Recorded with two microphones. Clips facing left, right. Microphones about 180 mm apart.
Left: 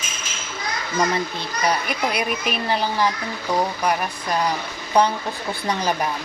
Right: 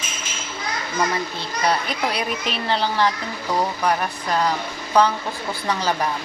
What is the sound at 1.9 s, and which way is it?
Speech, 15° left (ahead or behind).